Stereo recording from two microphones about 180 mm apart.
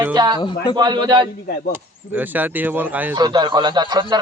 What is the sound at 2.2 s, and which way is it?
Speech, 10° right (ahead or behind).